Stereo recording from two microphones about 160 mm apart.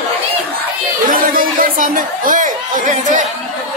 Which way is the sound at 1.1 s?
60° right (ahead or behind).